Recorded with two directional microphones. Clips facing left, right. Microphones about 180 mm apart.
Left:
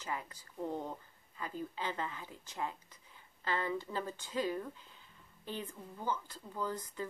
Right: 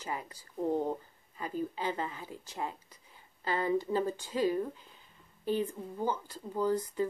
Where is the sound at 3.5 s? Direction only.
35° right (ahead or behind).